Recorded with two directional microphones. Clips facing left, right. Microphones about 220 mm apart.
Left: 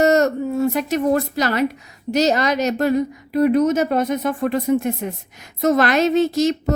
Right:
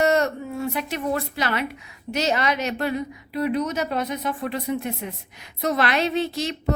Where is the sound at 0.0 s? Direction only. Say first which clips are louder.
Left 5 dB; 45° left (ahead or behind).